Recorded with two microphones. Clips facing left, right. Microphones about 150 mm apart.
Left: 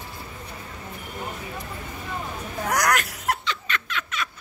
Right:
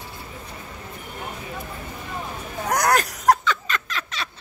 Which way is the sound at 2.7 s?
30° right (ahead or behind).